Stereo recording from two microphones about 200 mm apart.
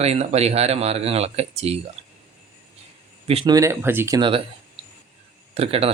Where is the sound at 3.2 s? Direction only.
25° right (ahead or behind); by 4.2 s 10° right (ahead or behind).